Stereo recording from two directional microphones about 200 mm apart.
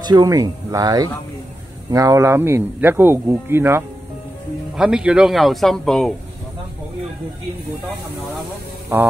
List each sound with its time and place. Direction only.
0.0 s speech: 20° right (ahead or behind); by 6.1 s centre (ahead or behind)